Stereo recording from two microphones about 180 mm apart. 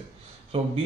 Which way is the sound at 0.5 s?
35° right (ahead or behind).